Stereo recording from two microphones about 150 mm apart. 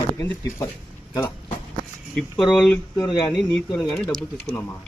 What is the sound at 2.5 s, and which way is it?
Speech, centre (ahead or behind).